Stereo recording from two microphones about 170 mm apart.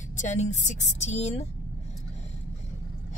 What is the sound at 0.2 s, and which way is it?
Speech, 45° left (ahead or behind).